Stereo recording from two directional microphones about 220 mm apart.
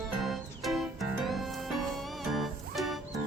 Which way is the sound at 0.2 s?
Centre (ahead or behind).